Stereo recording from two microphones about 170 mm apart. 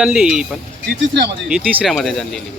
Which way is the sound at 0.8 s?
85° right.